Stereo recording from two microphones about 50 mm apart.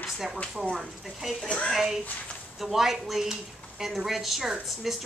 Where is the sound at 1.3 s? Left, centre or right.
Centre.